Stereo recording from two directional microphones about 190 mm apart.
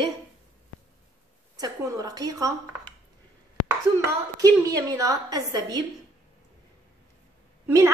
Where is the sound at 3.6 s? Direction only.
15° right (ahead or behind).